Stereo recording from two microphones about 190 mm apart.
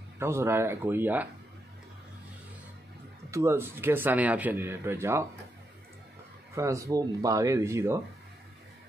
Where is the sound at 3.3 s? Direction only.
15° right (ahead or behind).